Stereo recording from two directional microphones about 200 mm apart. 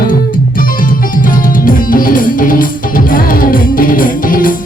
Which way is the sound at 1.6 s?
45° left (ahead or behind).